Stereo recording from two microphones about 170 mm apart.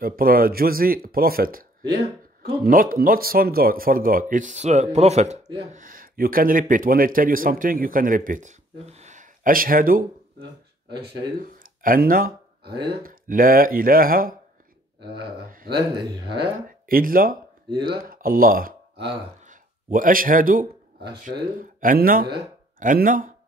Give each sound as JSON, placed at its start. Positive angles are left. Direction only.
{"t": 0.0, "sound": "speech", "side_deg": -60}
{"t": 5.7, "sound": "speech", "side_deg": -55}
{"t": 11.6, "sound": "a sound", "side_deg": -55}
{"t": 13.0, "sound": "speech", "side_deg": -55}
{"t": 15.0, "sound": "speech", "side_deg": -80}
{"t": 15.5, "sound": "speech", "side_deg": -60}
{"t": 17.6, "sound": "speech", "side_deg": -25}
{"t": 18.1, "sound": "a sound", "side_deg": -55}
{"t": 21.2, "sound": "speech", "side_deg": -50}